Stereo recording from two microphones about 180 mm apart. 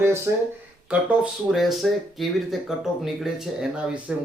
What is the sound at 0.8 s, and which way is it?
Speech, 5° right (ahead or behind).